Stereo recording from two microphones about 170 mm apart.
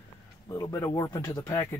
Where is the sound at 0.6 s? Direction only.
15° left (ahead or behind).